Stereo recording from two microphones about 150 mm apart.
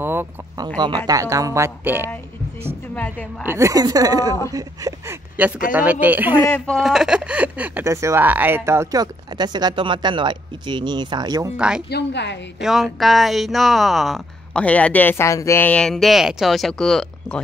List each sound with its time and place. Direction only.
0.0 s a sound: 15° right (ahead or behind)
0.7 s speech: 30° right (ahead or behind)
2.9 s a woman's voice: 10° left (ahead or behind)
3.4 s speech: 20° right (ahead or behind)
5.7 s speech: 10° right (ahead or behind)
6.4 s speech: 10° left (ahead or behind); by 11.5 s 25° right (ahead or behind)
11.5 s speech: 5° right (ahead or behind)